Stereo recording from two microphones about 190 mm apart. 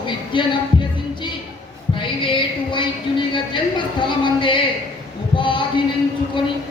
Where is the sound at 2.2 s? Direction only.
25° left (ahead or behind).